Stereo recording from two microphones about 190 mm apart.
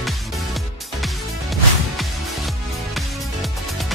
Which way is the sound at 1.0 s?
Centre (ahead or behind).